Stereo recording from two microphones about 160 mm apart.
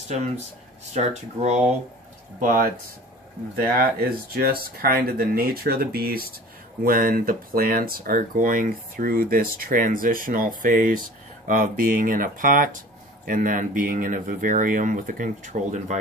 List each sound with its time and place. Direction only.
0.9 s speech: 45° right (ahead or behind)
2.4 s speech: 60° right (ahead or behind)